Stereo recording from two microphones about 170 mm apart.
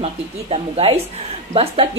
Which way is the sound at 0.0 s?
35° right (ahead or behind).